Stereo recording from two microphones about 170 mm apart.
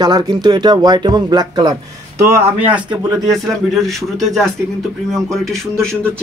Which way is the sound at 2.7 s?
5° right (ahead or behind).